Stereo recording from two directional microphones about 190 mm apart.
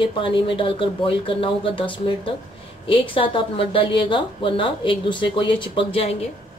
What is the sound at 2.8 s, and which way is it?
A woman's voice, 30° left (ahead or behind).